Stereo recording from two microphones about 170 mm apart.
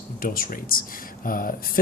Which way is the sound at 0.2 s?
55° left (ahead or behind).